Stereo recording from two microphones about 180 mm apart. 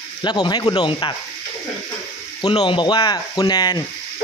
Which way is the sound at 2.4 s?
25° left (ahead or behind).